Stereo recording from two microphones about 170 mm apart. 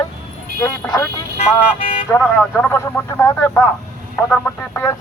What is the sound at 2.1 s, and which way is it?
Speech, 10° left (ahead or behind).